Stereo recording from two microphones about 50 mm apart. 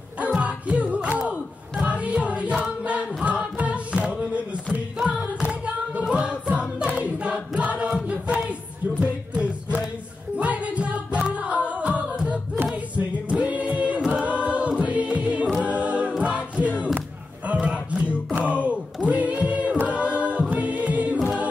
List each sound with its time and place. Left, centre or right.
0.2 s music: right
2.8 s choir: right
3.3 s music: right
4.9 s music: centre
6.0 s choir: centre
7.9 s music: right
12.9 s choir: right
17.5 s a sound: right
18.4 s music: right
19.9 s a capella: right
20.4 s music: right